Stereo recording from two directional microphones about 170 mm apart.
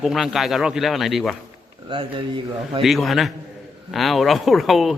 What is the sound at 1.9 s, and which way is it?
Speech, 30° right (ahead or behind).